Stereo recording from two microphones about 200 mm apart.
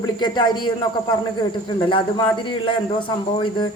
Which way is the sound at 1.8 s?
25° left (ahead or behind).